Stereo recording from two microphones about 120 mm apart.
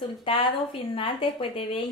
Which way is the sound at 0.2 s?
45° left (ahead or behind).